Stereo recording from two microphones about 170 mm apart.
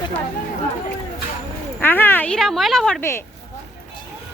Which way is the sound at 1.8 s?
10° left (ahead or behind).